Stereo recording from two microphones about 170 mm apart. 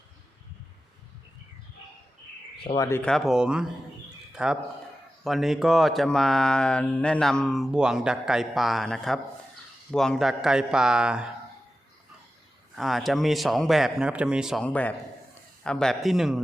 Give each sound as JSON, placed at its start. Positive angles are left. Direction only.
{"t": 2.6, "sound": "speech", "side_deg": 20}
{"t": 3.0, "sound": "speech", "side_deg": 0}
{"t": 4.3, "sound": "a sound", "side_deg": -5}
{"t": 5.2, "sound": "speech", "side_deg": 0}
{"t": 12.7, "sound": "speech", "side_deg": 0}